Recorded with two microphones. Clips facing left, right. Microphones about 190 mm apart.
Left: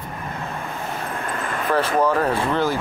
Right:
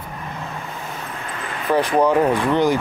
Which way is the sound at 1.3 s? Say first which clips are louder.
Left 2 dB; 45° left (ahead or behind).